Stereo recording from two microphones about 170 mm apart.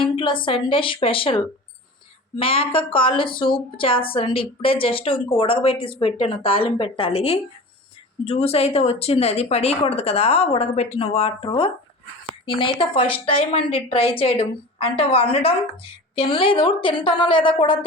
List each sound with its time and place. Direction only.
0.0 s a woman's voice: 30° left (ahead or behind)